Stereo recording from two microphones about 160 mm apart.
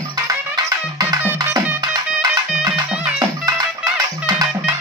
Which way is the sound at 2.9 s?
5° right (ahead or behind).